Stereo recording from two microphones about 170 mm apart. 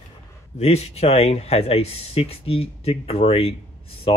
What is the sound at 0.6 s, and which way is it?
Speech, 35° left (ahead or behind).